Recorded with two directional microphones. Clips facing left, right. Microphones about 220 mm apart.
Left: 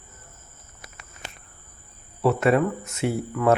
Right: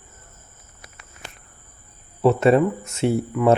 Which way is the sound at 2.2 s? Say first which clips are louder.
Right 4 dB; 25° right (ahead or behind).